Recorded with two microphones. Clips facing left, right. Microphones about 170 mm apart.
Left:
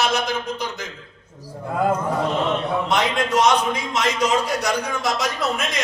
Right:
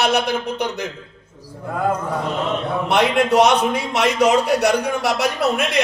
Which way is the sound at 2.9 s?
65° right (ahead or behind).